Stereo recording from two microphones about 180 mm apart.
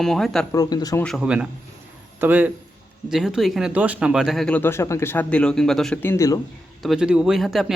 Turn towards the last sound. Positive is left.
turn(degrees=0)  # may be behind; listen again after turning